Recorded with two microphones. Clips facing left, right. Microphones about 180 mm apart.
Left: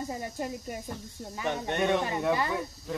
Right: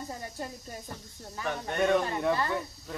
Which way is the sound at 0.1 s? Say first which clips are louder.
Left 4 dB; 15° left (ahead or behind).